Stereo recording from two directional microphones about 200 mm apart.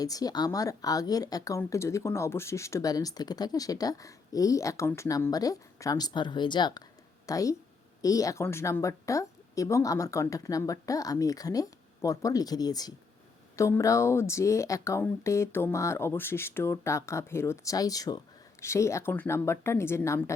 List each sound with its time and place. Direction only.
0.0 s a woman's voice: 20° left (ahead or behind)